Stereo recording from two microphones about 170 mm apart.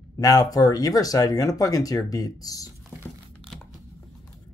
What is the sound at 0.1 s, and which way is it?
Speech, 20° left (ahead or behind).